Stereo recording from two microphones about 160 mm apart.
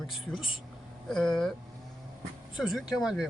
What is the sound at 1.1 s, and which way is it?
Speech, 5° left (ahead or behind).